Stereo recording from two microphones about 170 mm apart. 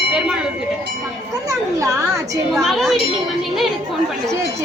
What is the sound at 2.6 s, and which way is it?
Speech, centre (ahead or behind).